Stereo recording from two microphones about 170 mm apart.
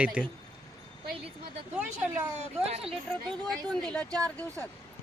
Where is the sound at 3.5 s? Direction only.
5° left (ahead or behind).